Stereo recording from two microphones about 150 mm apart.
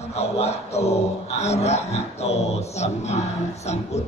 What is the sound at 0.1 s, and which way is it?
Speech, 45° left (ahead or behind).